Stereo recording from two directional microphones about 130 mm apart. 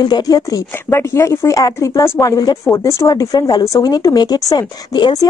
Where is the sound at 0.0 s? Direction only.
30° left (ahead or behind).